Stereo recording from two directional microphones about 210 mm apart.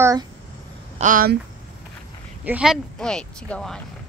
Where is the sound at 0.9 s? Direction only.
40° right (ahead or behind).